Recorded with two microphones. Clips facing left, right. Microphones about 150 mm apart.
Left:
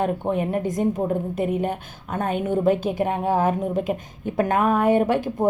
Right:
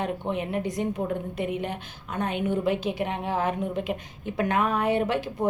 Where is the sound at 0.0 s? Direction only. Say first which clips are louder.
Left 6 dB; 45° left (ahead or behind).